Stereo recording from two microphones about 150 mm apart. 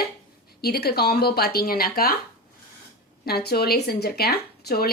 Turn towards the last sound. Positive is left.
turn(degrees=90)